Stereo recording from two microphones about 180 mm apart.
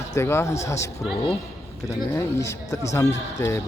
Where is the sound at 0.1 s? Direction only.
15° left (ahead or behind).